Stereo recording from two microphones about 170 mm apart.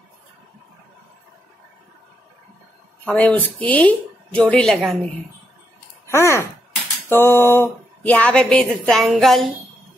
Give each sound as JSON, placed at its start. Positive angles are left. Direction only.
{"t": 3.1, "sound": "speech", "side_deg": 10}
{"t": 6.0, "sound": "speech", "side_deg": 15}